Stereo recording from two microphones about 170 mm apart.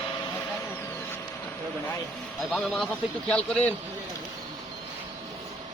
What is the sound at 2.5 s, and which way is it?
A man's voice, centre (ahead or behind).